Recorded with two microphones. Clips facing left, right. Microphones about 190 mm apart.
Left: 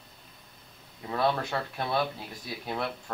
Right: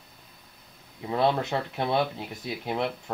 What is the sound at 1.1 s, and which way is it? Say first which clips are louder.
Speech: right 3 dB; 20° right (ahead or behind).